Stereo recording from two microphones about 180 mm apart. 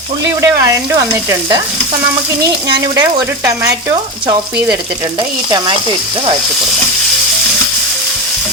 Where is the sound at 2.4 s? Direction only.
25° right (ahead or behind).